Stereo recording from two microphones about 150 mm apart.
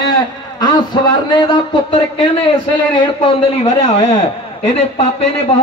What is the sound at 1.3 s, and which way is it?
Speech, 30° left (ahead or behind).